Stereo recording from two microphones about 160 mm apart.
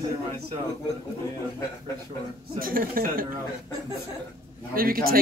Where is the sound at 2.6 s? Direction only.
65° right (ahead or behind).